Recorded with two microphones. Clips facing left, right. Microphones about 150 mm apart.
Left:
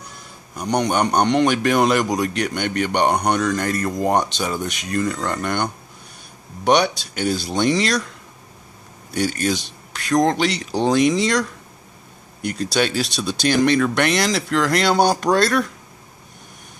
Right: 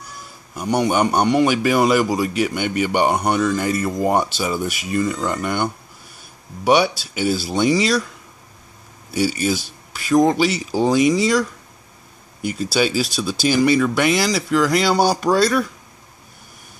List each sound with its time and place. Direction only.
0.6 s a man's voice: 5° right (ahead or behind)
9.1 s a man's voice: 5° right (ahead or behind)